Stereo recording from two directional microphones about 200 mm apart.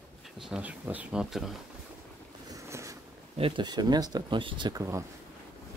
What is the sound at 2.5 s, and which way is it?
Boat, 15° right (ahead or behind).